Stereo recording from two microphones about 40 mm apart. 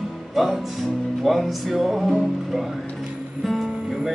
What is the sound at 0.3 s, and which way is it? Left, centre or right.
Music, centre.